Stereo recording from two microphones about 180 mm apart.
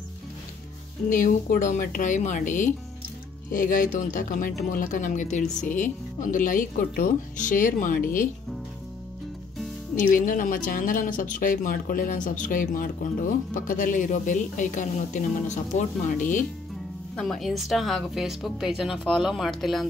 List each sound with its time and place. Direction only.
1.1 s speech: 45° left (ahead or behind)
10.1 s speech: 50° left (ahead or behind)
17.1 s a woman's voice: 5° left (ahead or behind)